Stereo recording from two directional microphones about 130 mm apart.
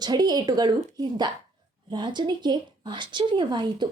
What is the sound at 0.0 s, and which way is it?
A woman's voice, 30° right (ahead or behind).